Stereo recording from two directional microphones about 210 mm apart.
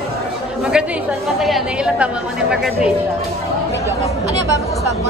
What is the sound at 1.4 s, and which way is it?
A woman's voice, centre (ahead or behind).